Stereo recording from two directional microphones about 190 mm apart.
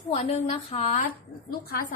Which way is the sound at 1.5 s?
50° left (ahead or behind).